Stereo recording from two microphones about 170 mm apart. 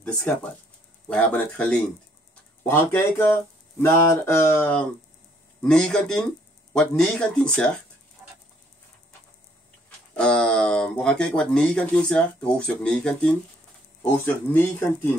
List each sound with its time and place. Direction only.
0.0 s speech: 10° left (ahead or behind)
9.8 s speech: 5° left (ahead or behind)